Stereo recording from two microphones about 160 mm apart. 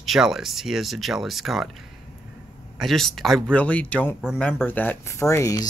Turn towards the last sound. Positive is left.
turn(degrees=20)  # may be behind; listen again after turning